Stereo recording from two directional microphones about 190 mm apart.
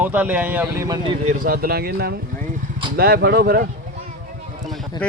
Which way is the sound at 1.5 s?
50° right (ahead or behind).